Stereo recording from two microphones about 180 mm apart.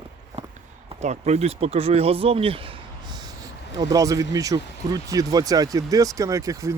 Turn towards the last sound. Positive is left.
turn(degrees=-20)  # may be behind; listen again after turning